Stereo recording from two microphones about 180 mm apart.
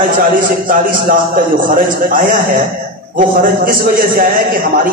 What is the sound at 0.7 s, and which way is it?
A man's voice, 50° right (ahead or behind).